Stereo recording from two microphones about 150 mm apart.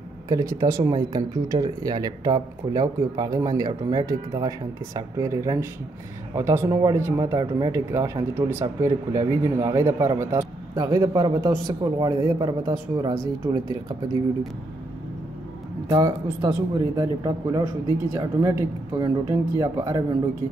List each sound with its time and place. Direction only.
0.3 s speech: 25° right (ahead or behind)
15.9 s speech: 25° right (ahead or behind)